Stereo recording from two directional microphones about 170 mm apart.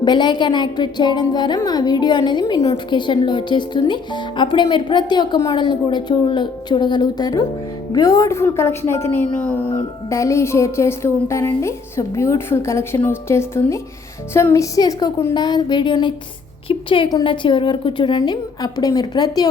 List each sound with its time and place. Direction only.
0.0 s a woman's voice: 25° left (ahead or behind)